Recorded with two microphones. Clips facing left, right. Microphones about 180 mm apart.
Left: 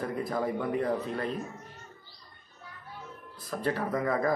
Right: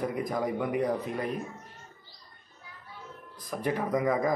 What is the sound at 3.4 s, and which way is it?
Speech, 15° right (ahead or behind).